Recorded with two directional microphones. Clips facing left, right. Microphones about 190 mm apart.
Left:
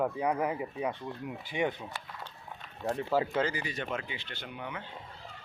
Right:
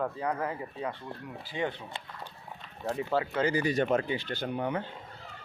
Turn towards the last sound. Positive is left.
turn(degrees=-40)  # may be behind; listen again after turning